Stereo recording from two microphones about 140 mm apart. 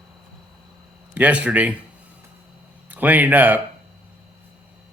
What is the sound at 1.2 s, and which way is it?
Speech, 10° right (ahead or behind).